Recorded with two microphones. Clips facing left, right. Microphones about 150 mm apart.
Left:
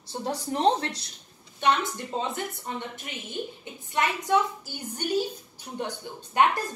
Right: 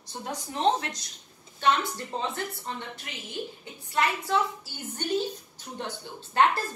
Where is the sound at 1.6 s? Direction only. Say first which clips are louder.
Left 1 dB; 20° left (ahead or behind).